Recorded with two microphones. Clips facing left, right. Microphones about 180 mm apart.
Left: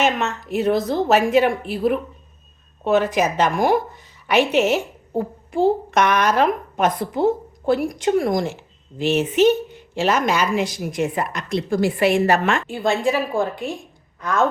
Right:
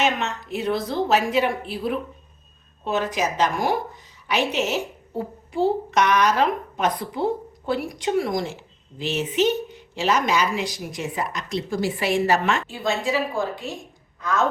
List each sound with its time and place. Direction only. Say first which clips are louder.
0.0 s a woman's voice: left 3 dB; 45° left (ahead or behind)